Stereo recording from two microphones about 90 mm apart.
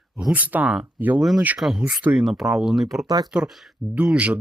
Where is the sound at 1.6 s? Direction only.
5° right (ahead or behind).